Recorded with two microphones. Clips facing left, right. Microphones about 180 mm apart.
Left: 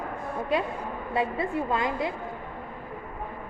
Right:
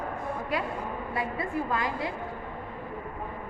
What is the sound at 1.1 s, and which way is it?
Speech, 25° left (ahead or behind).